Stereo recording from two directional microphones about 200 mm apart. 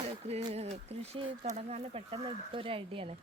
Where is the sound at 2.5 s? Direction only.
30° right (ahead or behind).